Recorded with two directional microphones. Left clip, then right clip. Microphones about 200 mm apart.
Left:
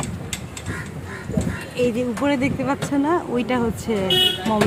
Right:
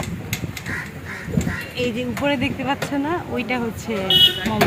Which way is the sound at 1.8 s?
15° left (ahead or behind).